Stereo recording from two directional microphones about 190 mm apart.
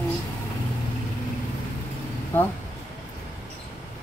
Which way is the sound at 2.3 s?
10° left (ahead or behind).